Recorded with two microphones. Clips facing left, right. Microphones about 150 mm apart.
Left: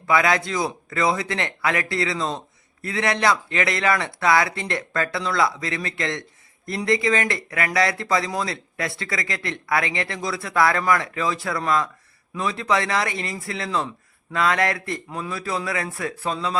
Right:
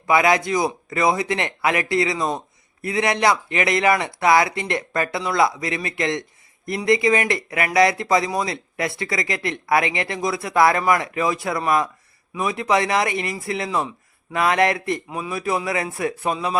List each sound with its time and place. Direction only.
0.1 s a man's voice: 20° right (ahead or behind)
13.7 s a man's voice: 10° right (ahead or behind)
14.3 s speech: 20° right (ahead or behind)